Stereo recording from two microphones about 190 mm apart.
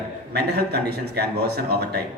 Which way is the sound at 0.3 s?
55° right (ahead or behind).